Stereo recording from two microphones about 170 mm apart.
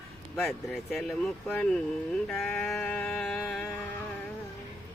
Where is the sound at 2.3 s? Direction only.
Centre (ahead or behind).